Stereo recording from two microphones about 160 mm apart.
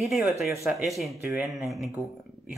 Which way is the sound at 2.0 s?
20° left (ahead or behind).